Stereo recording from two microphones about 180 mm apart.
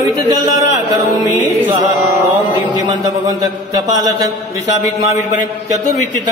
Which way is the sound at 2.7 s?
20° right (ahead or behind).